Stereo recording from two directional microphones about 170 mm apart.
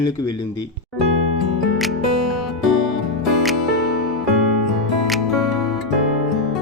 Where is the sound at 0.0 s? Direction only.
20° left (ahead or behind).